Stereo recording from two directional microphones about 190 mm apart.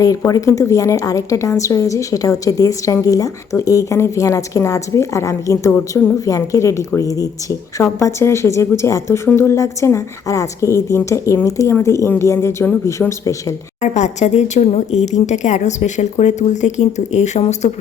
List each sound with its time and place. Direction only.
0.0 s a woman's voice: 20° left (ahead or behind)
13.8 s speech: 40° left (ahead or behind)